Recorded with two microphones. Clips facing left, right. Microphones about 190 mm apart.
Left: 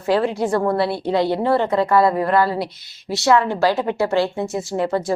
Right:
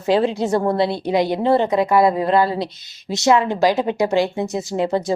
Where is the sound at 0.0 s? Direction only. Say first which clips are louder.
Right 1 dB; 20° right (ahead or behind).